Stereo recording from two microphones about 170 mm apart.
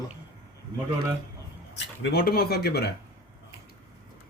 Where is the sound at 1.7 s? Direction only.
80° left.